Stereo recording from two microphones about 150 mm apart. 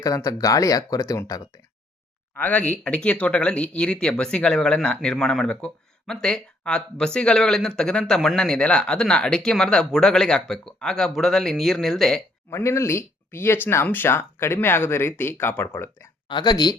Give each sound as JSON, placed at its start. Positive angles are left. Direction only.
{"t": 0.0, "sound": "speech", "side_deg": 25}
{"t": 2.3, "sound": "speech", "side_deg": 10}
{"t": 12.5, "sound": "speech", "side_deg": 20}
{"t": 16.3, "sound": "speech", "side_deg": 30}